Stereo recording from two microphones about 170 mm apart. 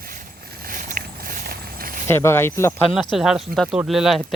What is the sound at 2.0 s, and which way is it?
Speech, 15° left (ahead or behind).